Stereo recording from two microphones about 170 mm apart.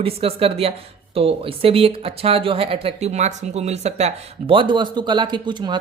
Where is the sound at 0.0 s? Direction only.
35° right (ahead or behind).